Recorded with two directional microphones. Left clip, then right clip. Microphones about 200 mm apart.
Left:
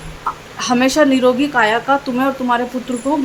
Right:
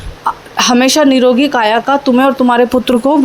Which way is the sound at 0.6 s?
35° right (ahead or behind).